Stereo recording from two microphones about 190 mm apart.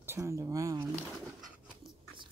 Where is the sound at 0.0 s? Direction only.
15° right (ahead or behind).